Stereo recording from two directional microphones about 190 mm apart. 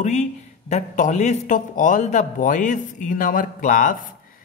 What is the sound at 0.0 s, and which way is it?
A man's voice, 35° left (ahead or behind).